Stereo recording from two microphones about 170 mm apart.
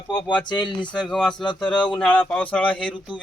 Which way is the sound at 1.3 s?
25° left (ahead or behind).